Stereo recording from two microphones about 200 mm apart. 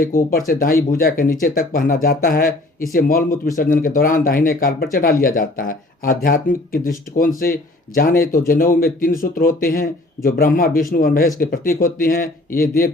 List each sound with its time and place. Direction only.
0.0 s speech: 45° left (ahead or behind)